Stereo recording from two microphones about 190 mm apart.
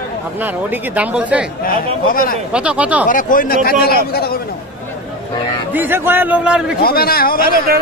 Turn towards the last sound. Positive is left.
turn(degrees=50)  # may be behind; listen again after turning